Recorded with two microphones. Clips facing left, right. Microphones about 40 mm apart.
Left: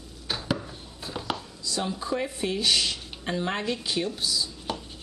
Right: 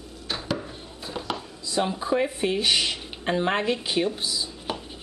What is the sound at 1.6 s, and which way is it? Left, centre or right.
Speech, right.